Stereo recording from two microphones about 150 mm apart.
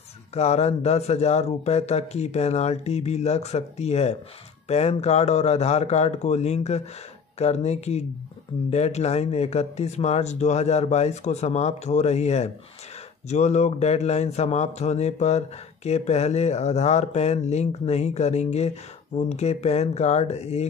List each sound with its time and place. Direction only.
0.3 s speech: 45° left (ahead or behind)